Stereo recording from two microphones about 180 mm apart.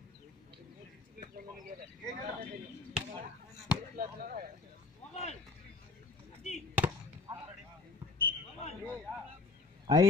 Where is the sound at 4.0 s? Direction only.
50° right (ahead or behind).